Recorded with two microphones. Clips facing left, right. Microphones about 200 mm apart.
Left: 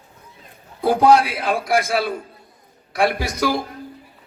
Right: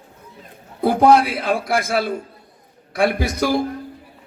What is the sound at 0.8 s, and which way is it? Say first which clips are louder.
A man's voice: right 1 dB; 55° right (ahead or behind).